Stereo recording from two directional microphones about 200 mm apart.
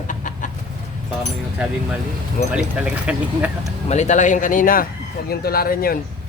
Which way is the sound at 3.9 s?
35° left (ahead or behind).